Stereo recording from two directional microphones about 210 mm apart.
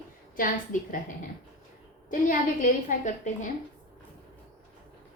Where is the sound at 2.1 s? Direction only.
40° left (ahead or behind).